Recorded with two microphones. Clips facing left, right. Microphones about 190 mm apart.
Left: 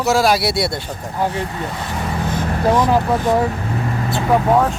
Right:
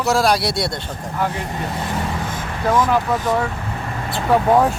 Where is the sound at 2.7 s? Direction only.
15° left (ahead or behind).